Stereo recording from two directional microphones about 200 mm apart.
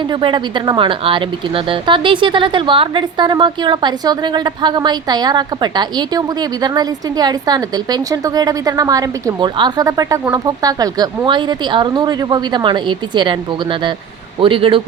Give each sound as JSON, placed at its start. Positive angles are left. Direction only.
{"t": 0.1, "sound": "speech", "side_deg": -25}